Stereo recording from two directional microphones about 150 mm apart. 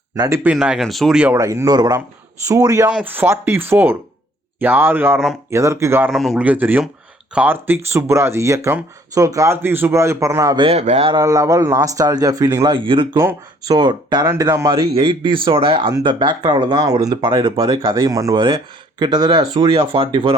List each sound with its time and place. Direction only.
0.2 s speech: 15° right (ahead or behind)
0.5 s speech: 5° right (ahead or behind)
1.4 s speech: 25° right (ahead or behind)
6.1 s speech: centre (ahead or behind)
6.4 s speech: 10° right (ahead or behind)
10.7 s speech: 45° right (ahead or behind)
11.2 s speech: 25° right (ahead or behind)
13.1 s speech: 20° right (ahead or behind)
13.7 s speech: 30° right (ahead or behind)
14.9 s speech: 35° right (ahead or behind)
19.7 s speech: 40° right (ahead or behind)